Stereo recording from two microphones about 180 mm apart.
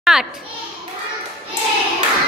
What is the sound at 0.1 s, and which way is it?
Speech, 5° right (ahead or behind).